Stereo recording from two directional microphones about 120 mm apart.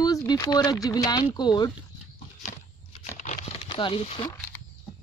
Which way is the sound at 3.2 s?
90° left.